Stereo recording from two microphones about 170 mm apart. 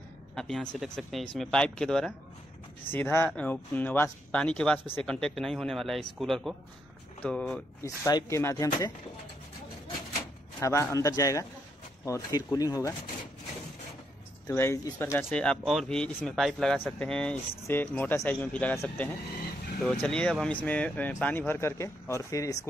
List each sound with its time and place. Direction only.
0.4 s speech: centre (ahead or behind)
7.8 s speech: 20° left (ahead or behind)
10.6 s speech: 15° left (ahead or behind)
14.5 s speech: 15° left (ahead or behind)